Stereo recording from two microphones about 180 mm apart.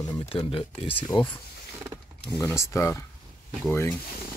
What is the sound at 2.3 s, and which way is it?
Speech, 15° left (ahead or behind).